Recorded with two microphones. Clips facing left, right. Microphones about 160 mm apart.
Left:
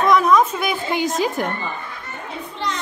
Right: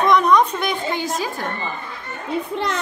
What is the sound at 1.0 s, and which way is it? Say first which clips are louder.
Speech: left 4 dB; 20° left (ahead or behind).